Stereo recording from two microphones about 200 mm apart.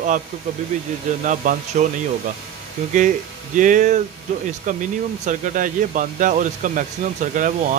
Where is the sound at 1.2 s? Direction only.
40° right (ahead or behind).